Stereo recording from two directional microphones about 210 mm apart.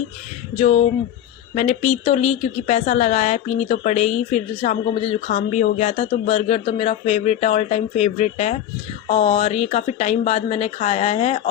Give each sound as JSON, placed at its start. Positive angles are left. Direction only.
{"t": 0.6, "sound": "a woman's voice", "side_deg": 30}